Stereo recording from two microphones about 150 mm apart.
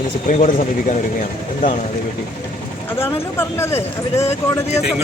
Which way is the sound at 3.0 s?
15° left (ahead or behind).